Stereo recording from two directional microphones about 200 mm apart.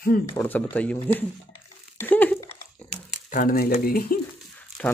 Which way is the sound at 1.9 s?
10° left (ahead or behind).